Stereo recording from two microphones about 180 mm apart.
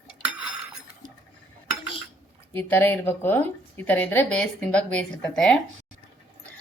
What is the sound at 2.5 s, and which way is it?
A woman's voice, 10° left (ahead or behind).